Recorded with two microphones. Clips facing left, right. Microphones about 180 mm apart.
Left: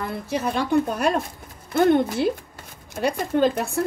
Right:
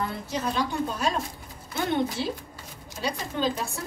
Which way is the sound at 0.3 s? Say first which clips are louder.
Left 8 dB; 55° left (ahead or behind).